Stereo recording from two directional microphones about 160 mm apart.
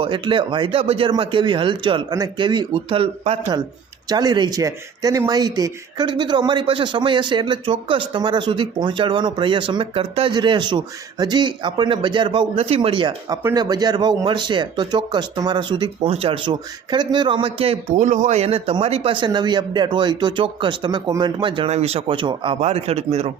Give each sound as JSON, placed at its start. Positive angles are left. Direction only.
{"t": 0.0, "sound": "speech", "side_deg": -30}
{"t": 4.1, "sound": "speech", "side_deg": -25}
{"t": 17.9, "sound": "speech", "side_deg": -50}